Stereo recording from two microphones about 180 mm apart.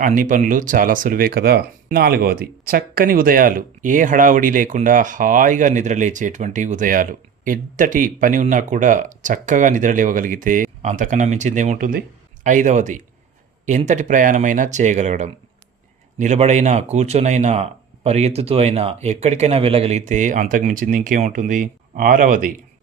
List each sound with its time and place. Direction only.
0.0 s speech: 45° right (ahead or behind)